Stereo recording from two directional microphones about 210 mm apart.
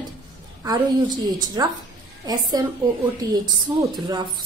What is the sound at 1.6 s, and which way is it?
A woman's voice, 15° right (ahead or behind).